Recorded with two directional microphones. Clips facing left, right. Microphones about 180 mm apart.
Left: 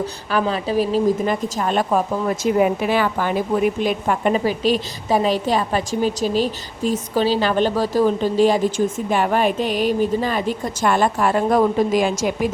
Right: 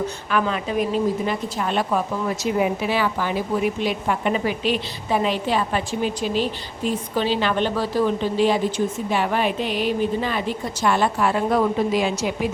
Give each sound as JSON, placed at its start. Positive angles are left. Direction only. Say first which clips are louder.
{"t": 0.3, "sound": "a woman's voice", "louder": "left 3 dB", "side_deg": 35}